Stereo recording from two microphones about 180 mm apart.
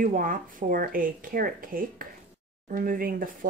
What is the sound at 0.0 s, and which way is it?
Speech, 45° right (ahead or behind).